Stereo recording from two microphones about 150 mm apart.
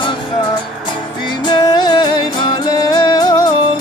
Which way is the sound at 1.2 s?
30° left (ahead or behind).